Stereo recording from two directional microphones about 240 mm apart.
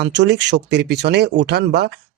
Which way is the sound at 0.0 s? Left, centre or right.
Right.